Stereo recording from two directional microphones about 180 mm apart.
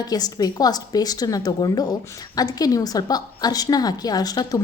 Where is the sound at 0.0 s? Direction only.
20° left (ahead or behind).